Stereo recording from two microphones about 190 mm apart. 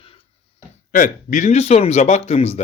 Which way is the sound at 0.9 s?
45° left (ahead or behind).